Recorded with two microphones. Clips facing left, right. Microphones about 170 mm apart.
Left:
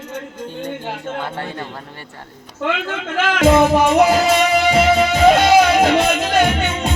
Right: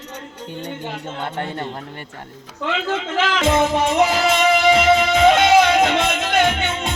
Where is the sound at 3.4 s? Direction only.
35° left (ahead or behind).